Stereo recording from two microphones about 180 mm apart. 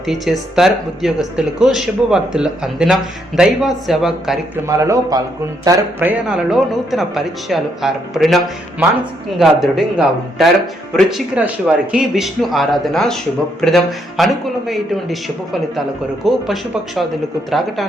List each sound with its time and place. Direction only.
0.0 s speech: centre (ahead or behind)
4.6 s a man's voice: 15° right (ahead or behind); by 8.4 s centre (ahead or behind)
9.4 s speech: centre (ahead or behind)
16.2 s speech: centre (ahead or behind)